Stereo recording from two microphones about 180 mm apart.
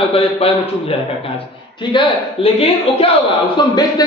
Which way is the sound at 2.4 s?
30° left (ahead or behind).